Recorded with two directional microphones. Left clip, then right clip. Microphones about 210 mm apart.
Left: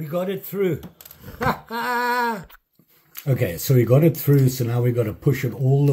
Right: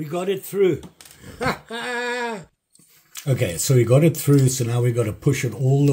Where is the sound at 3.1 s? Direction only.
5° right (ahead or behind).